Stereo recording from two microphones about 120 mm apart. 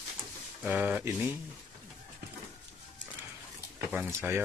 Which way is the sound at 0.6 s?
10° right (ahead or behind).